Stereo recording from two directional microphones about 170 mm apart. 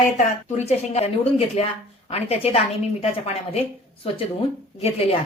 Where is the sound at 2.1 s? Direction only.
35° left (ahead or behind).